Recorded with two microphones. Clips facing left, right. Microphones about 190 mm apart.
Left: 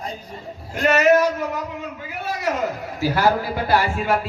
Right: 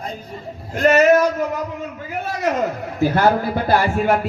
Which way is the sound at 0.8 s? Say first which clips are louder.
Right 3 dB; 40° right (ahead or behind).